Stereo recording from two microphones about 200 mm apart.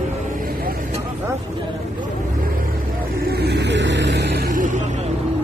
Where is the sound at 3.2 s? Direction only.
50° right (ahead or behind).